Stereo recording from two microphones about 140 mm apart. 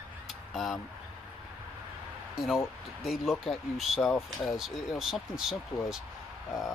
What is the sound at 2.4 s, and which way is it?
Speech, centre (ahead or behind).